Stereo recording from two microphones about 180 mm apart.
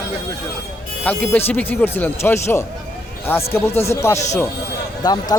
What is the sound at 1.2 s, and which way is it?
Speech, 10° left (ahead or behind).